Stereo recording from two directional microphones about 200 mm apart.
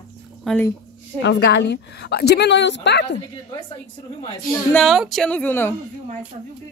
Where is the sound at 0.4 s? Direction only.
Centre (ahead or behind).